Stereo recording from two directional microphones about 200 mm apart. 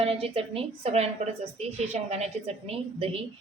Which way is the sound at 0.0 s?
30° right (ahead or behind).